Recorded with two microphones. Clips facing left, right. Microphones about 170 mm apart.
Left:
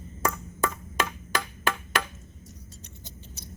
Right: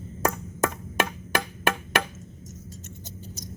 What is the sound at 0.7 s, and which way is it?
Chop, 55° right (ahead or behind).